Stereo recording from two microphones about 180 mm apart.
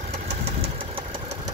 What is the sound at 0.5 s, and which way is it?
Engine, 30° right (ahead or behind).